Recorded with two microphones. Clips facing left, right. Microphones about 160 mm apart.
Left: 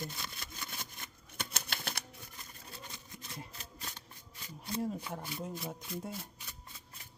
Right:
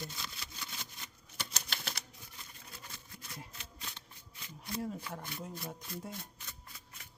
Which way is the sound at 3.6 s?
40° left (ahead or behind).